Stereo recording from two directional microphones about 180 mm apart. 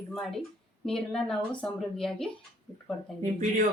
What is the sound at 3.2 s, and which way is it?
Speech, 40° right (ahead or behind).